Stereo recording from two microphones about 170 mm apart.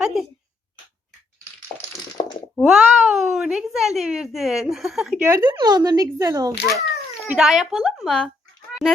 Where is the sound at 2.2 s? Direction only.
35° left (ahead or behind).